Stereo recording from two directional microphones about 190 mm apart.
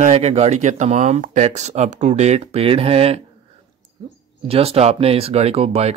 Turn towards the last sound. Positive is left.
turn(degrees=-35)  # may be behind; listen again after turning